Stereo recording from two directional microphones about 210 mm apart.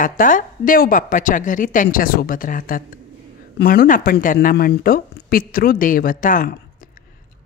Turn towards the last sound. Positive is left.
turn(degrees=40)  # may be behind; listen again after turning